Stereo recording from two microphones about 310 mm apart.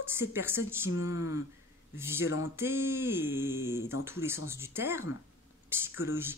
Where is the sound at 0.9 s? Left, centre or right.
Left.